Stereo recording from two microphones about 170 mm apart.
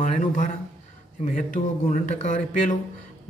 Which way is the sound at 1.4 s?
50° left (ahead or behind).